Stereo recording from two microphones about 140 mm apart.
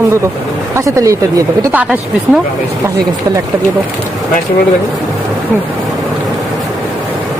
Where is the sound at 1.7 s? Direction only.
10° right (ahead or behind).